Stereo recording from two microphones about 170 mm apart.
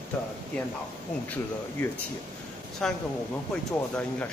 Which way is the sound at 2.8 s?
5° left (ahead or behind).